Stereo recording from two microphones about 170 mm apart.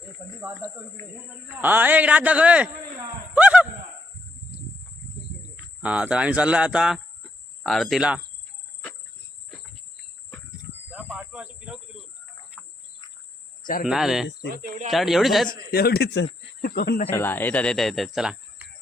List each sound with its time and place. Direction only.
0.6 s speech: 15° right (ahead or behind)
3.3 s a sound: 10° right (ahead or behind)
5.8 s speech: 5° right (ahead or behind)
10.9 s cricket: 5° right (ahead or behind)
13.8 s speech: centre (ahead or behind)
14.5 s speech: 45° right (ahead or behind)
14.8 s speech: centre (ahead or behind)
15.7 s a man's voice: 65° left (ahead or behind)
16.6 s speech: 65° left (ahead or behind)
17.1 s speech: 10° left (ahead or behind); by 18.7 s 5° right (ahead or behind)